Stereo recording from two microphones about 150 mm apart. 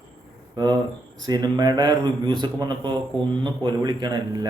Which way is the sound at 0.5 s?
25° right (ahead or behind).